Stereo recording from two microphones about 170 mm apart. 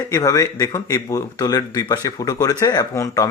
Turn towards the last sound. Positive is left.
turn(degrees=20)  # may be behind; listen again after turning